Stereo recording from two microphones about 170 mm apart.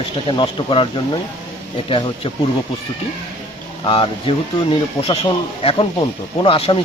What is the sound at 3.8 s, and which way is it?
Speech, 30° left (ahead or behind).